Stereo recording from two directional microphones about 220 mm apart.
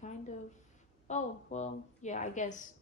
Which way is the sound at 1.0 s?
30° left (ahead or behind).